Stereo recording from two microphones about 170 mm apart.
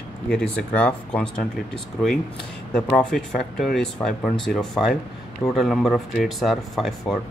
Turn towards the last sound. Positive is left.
turn(degrees=0)  # may be behind; listen again after turning